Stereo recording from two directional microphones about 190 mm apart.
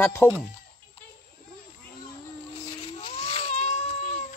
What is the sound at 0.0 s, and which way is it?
Speech, 10° left (ahead or behind).